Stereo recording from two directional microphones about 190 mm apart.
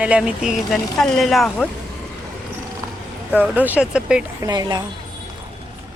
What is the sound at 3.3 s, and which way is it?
Speech, 10° right (ahead or behind).